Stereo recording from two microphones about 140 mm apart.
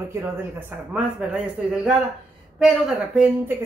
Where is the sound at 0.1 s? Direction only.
15° right (ahead or behind).